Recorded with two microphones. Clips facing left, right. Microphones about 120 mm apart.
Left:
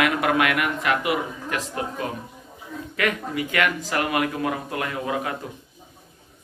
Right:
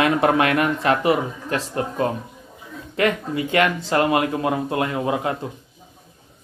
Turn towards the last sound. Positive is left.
turn(degrees=-25)  # may be behind; listen again after turning